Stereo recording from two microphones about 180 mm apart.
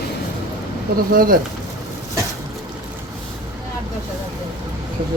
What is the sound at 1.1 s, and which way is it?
Speech, 50° right (ahead or behind).